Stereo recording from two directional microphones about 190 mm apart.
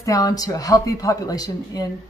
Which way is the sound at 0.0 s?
20° left (ahead or behind).